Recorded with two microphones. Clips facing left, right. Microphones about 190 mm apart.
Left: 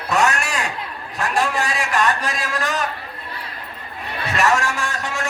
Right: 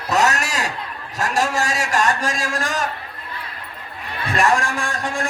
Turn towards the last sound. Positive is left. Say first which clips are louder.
# right 1 dB
turn(degrees=-50)  # may be behind; listen again after turning